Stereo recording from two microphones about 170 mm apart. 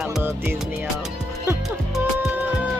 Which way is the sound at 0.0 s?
5° right (ahead or behind).